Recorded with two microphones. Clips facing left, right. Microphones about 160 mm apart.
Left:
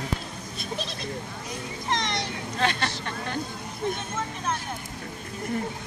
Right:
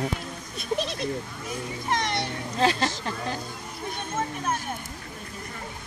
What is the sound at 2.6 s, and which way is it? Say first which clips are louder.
Speech: right 4 dB; 35° right (ahead or behind).